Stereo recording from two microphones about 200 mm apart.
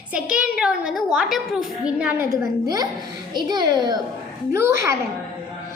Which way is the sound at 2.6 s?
20° right (ahead or behind).